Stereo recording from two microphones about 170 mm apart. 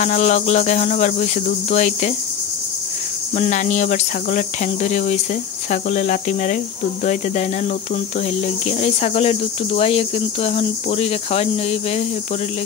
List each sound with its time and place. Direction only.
0.0 s cricket: 45° left (ahead or behind)
3.3 s cricket: 45° left (ahead or behind)
8.6 s cricket: 40° left (ahead or behind)